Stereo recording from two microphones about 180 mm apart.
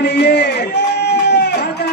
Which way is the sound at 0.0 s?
65° left (ahead or behind).